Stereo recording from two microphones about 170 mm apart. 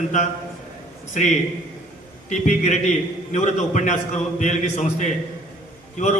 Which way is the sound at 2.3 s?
45° left (ahead or behind).